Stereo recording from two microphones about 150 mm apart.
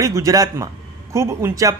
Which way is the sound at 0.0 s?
20° right (ahead or behind).